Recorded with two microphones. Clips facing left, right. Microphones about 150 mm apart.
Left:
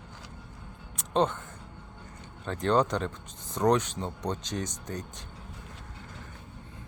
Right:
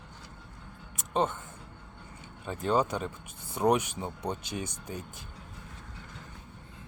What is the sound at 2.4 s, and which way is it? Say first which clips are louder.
Speech: left 2 dB; 5° right (ahead or behind).